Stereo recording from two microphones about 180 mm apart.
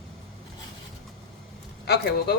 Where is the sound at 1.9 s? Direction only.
65° left (ahead or behind).